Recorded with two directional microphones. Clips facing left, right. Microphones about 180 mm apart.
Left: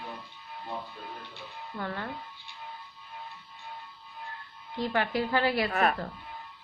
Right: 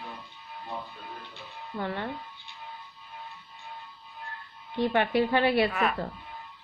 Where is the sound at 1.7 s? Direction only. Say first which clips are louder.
Right 3 dB; 20° right (ahead or behind).